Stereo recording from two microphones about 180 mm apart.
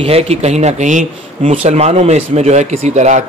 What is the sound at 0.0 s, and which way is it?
Speech, 35° right (ahead or behind).